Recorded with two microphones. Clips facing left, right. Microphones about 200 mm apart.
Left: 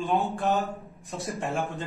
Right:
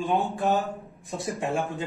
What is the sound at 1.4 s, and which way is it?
Speech, 15° right (ahead or behind).